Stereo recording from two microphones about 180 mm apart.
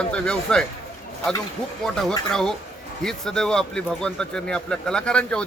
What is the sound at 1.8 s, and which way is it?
A man's voice, centre (ahead or behind).